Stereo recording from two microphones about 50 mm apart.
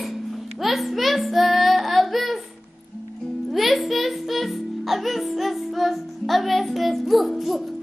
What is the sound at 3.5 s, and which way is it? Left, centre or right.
Music, centre.